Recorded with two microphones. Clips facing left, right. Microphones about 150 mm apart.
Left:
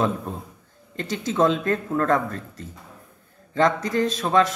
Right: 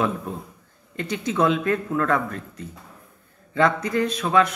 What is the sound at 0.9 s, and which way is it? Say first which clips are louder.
Speech: left 1 dB; 35° left (ahead or behind).